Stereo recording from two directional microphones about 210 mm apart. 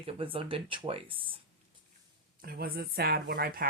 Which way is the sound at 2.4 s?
45° right (ahead or behind).